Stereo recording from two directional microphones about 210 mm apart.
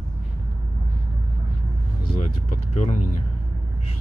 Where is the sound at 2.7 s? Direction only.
30° left (ahead or behind).